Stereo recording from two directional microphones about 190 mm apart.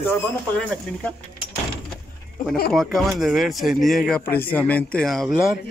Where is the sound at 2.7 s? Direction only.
Centre (ahead or behind).